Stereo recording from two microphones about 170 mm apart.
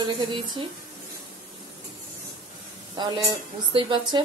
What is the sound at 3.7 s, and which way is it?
Speech, 30° right (ahead or behind).